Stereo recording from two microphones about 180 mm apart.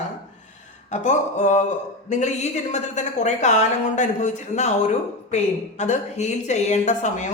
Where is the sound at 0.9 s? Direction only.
40° left (ahead or behind).